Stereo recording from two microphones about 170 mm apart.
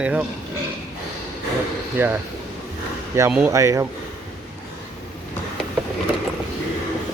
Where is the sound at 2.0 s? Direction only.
10° right (ahead or behind).